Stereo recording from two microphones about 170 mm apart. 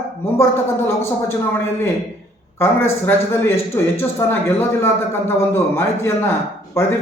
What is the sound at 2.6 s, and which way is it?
A man's voice, 15° left (ahead or behind).